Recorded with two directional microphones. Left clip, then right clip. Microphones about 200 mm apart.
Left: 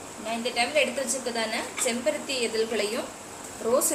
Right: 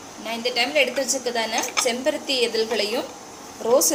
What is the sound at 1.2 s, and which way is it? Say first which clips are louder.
A woman's voice: right 5 dB; 20° right (ahead or behind).